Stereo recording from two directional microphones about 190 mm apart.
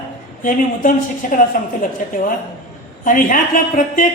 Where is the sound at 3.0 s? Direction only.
45° left (ahead or behind).